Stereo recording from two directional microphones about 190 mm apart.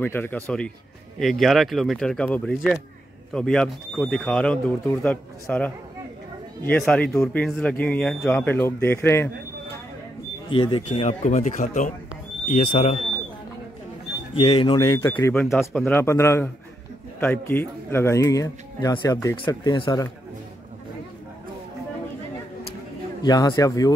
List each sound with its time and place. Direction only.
0.0 s speech: 10° left (ahead or behind)
6.8 s speech: 5° left (ahead or behind)
10.5 s a man's voice: 25° left (ahead or behind)
10.9 s speech: 40° left (ahead or behind)
14.3 s a man's voice: 30° left (ahead or behind)
23.2 s a man's voice: 20° left (ahead or behind)